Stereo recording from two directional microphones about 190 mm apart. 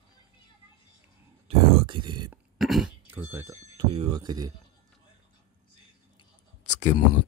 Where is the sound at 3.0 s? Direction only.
10° right (ahead or behind).